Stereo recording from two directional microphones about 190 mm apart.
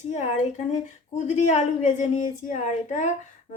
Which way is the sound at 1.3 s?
40° left (ahead or behind).